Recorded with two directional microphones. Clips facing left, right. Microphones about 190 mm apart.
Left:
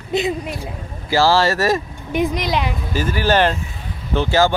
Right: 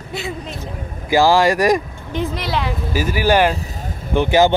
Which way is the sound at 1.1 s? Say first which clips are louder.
Right 2 dB; 15° right (ahead or behind).